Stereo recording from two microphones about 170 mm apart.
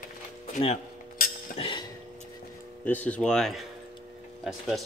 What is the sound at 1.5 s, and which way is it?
Chink, 30° left (ahead or behind).